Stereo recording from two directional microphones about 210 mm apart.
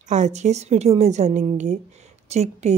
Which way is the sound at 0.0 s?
35° right (ahead or behind).